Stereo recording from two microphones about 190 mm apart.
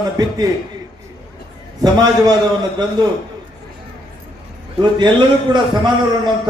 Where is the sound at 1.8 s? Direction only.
20° right (ahead or behind).